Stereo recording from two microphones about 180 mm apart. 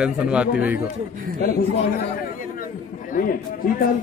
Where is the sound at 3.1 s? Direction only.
50° left (ahead or behind).